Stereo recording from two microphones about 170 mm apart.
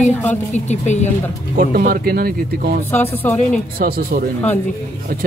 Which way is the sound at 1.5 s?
60° right (ahead or behind).